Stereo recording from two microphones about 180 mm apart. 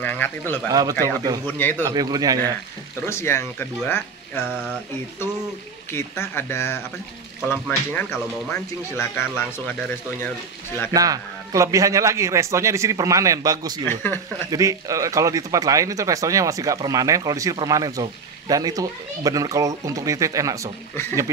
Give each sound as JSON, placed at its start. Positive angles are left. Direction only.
{"t": 0.0, "sound": "speech", "side_deg": 10}
{"t": 0.7, "sound": "speech", "side_deg": -20}
{"t": 3.1, "sound": "speech", "side_deg": 15}
{"t": 4.5, "sound": "a sound", "side_deg": -5}
{"t": 5.9, "sound": "speech", "side_deg": 15}
{"t": 10.9, "sound": "a man's voice", "side_deg": -20}
{"t": 13.8, "sound": "speech", "side_deg": 10}
{"t": 14.5, "sound": "speech", "side_deg": -20}